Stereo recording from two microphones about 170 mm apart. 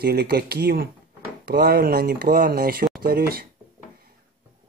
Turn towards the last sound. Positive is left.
turn(degrees=-65)  # may be behind; listen again after turning